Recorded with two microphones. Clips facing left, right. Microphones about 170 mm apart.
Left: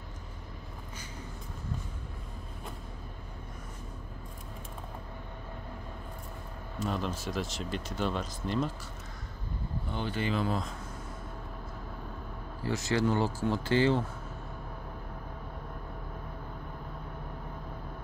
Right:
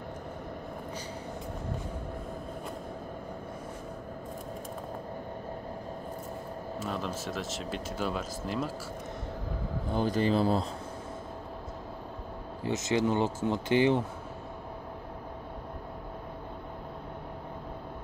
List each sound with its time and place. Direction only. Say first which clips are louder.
6.8 s speech: left 2 dB; centre (ahead or behind)
9.8 s speech: right 6 dB; 40° right (ahead or behind)
12.6 s speech: right 1 dB; 20° right (ahead or behind)